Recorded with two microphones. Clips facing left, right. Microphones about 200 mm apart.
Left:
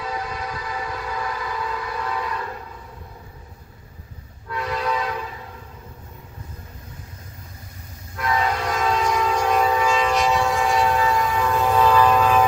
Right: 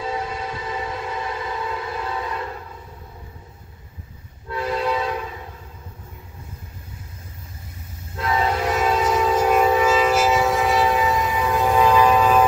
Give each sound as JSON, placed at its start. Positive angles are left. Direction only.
{"t": 0.0, "sound": "civil defense siren", "side_deg": -25}
{"t": 4.5, "sound": "train", "side_deg": -25}
{"t": 8.2, "sound": "train", "side_deg": -25}
{"t": 8.6, "sound": "train", "side_deg": -5}
{"t": 11.2, "sound": "train", "side_deg": -15}
{"t": 11.5, "sound": "train", "side_deg": -5}